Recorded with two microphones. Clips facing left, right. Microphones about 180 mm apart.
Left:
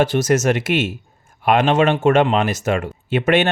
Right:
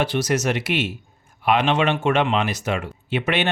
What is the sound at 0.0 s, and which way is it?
Speech, 45° left (ahead or behind).